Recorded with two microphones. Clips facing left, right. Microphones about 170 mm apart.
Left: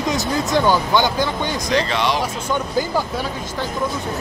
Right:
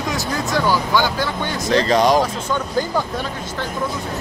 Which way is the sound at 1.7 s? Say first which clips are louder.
Right 6 dB; 40° right (ahead or behind).